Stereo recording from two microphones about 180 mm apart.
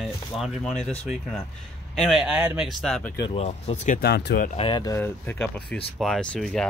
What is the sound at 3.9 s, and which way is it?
Speech, 65° left (ahead or behind).